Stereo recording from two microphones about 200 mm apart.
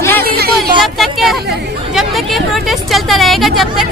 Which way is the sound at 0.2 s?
50° right (ahead or behind).